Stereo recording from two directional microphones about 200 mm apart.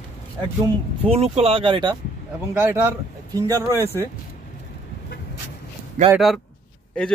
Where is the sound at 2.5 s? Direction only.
10° right (ahead or behind).